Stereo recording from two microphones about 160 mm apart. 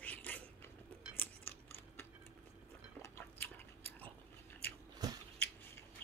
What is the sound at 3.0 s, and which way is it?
Biting, 15° left (ahead or behind).